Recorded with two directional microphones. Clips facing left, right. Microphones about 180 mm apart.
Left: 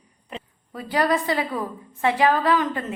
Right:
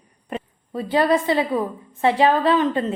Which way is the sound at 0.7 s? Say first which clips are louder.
Right 4 dB; 25° right (ahead or behind).